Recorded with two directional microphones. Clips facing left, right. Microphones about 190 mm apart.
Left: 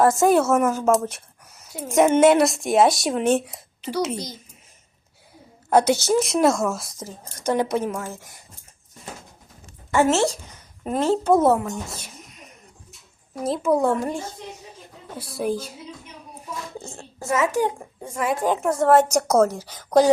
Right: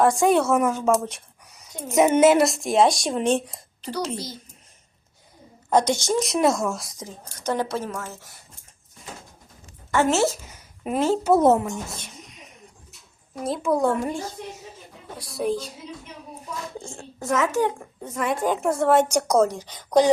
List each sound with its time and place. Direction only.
0.0 s speech: centre (ahead or behind)
4.1 s speech: 20° left (ahead or behind)
5.7 s speech: 10° left (ahead or behind)
7.4 s a woman's voice: 15° left (ahead or behind)
10.1 s a woman's voice: centre (ahead or behind)
11.4 s speech: 20° right (ahead or behind)
11.9 s a sound: 5° left (ahead or behind)
13.3 s speech: centre (ahead or behind)
17.0 s a woman's voice: 10° left (ahead or behind)